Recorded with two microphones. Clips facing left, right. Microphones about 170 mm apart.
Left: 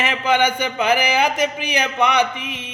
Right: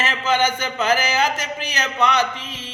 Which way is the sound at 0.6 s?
15° left (ahead or behind).